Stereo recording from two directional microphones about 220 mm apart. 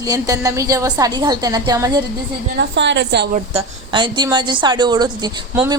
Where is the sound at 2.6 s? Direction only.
55° right (ahead or behind).